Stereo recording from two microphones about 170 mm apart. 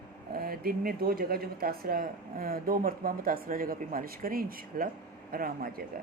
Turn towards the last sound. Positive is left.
turn(degrees=-60)  # may be behind; listen again after turning